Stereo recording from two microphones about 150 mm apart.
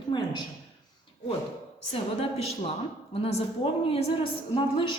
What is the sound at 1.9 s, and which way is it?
A woman's voice, 40° left (ahead or behind).